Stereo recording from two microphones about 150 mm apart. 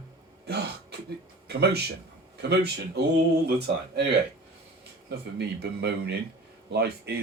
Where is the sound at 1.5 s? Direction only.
90° right.